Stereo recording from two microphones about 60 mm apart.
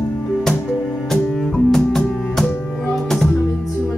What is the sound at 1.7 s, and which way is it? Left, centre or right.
Double bass, centre.